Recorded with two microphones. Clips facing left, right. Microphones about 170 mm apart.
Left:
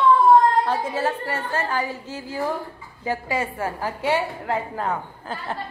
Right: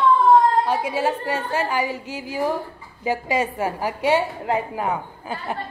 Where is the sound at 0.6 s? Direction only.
15° right (ahead or behind).